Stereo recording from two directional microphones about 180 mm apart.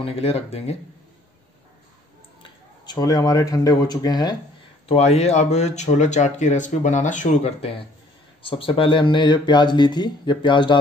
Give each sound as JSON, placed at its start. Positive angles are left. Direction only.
{"t": 0.0, "sound": "speech", "side_deg": 35}
{"t": 2.4, "sound": "speech", "side_deg": 25}
{"t": 4.8, "sound": "speech", "side_deg": 35}